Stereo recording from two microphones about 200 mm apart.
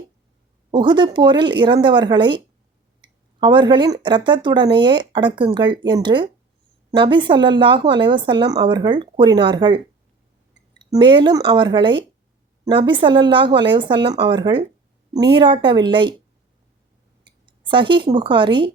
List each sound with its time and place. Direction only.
0.7 s speech: 20° right (ahead or behind)
17.4 s a woman's voice: 25° right (ahead or behind)